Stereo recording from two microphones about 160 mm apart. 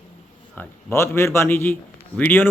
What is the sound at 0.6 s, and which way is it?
A man's voice, 15° left (ahead or behind).